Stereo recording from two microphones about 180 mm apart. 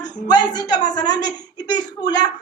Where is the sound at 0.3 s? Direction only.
20° left (ahead or behind).